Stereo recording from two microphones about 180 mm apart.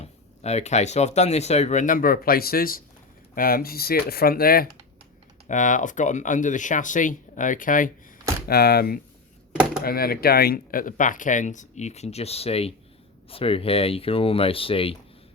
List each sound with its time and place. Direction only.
0.0 s speech: 35° left (ahead or behind); by 4.7 s 55° left (ahead or behind)
5.5 s speech: 45° left (ahead or behind)
8.4 s speech: 60° left (ahead or behind); by 14.9 s 30° left (ahead or behind)